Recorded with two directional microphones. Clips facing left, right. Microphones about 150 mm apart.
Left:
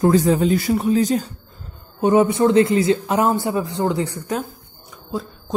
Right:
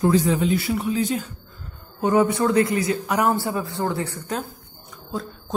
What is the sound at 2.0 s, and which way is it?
A man's voice, 20° left (ahead or behind).